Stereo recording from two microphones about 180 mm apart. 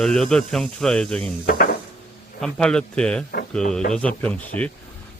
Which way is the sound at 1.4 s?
50° left (ahead or behind).